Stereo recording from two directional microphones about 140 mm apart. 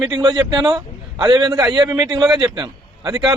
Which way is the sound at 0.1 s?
30° right (ahead or behind).